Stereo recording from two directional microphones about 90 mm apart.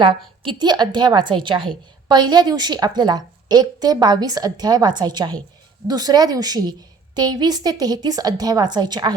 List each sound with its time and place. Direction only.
0.0 s a woman's voice: 65° right (ahead or behind)